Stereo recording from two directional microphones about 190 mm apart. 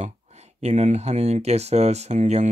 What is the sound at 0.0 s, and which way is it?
Speech, 35° right (ahead or behind).